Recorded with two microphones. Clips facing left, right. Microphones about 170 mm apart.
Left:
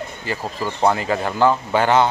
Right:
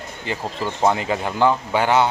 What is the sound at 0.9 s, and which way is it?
Speech, 15° right (ahead or behind).